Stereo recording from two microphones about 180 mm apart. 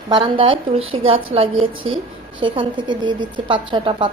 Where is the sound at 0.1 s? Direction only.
30° right (ahead or behind).